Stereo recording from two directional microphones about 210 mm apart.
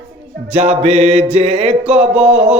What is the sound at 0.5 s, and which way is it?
Mantra, 30° right (ahead or behind).